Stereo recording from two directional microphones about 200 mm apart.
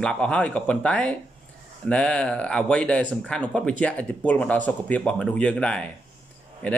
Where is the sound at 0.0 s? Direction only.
5° left (ahead or behind).